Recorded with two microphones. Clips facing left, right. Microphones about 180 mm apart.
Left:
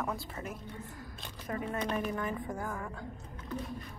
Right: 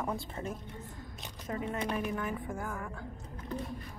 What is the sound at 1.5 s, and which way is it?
Speech, 15° right (ahead or behind).